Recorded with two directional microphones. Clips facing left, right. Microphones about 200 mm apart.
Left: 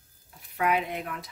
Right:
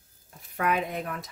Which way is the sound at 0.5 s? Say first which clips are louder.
Even; 45° right (ahead or behind).